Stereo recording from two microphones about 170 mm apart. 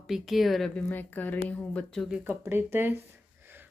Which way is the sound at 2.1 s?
5° right (ahead or behind).